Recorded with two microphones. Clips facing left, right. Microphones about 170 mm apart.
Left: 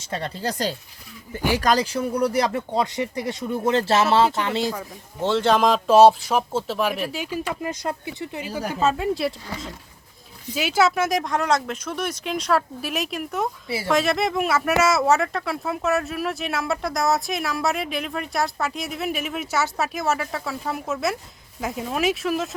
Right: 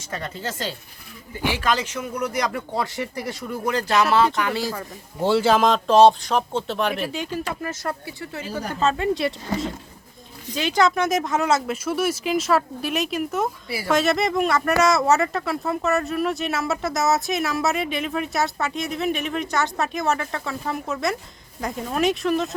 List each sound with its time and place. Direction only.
0.1 s speech: 35° left (ahead or behind)
4.7 s speech: 10° right (ahead or behind)
10.5 s speech: 5° left (ahead or behind)